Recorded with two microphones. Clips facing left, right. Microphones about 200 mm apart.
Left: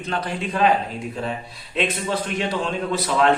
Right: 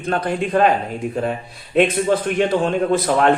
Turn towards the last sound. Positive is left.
turn(degrees=-50)  # may be behind; listen again after turning